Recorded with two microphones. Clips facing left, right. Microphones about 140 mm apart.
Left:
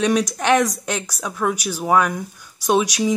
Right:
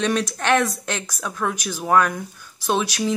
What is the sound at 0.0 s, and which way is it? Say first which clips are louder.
Speech: left 3 dB; 15° left (ahead or behind).